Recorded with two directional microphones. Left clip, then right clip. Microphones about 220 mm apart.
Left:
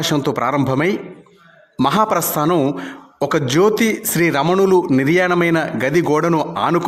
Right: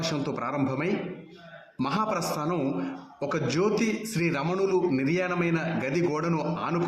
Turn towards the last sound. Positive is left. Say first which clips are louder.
# left 12 dB
turn(degrees=50)  # may be behind; listen again after turning